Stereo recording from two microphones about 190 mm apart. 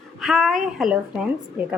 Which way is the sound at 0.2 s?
Centre (ahead or behind).